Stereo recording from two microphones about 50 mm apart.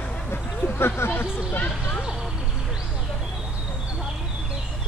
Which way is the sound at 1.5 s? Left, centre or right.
Left.